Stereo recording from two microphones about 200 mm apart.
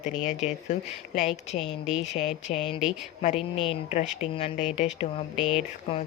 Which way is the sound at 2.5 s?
30° left (ahead or behind).